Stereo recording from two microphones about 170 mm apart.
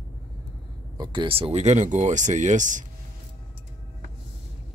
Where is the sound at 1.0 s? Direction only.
25° right (ahead or behind); by 2.8 s 45° right (ahead or behind).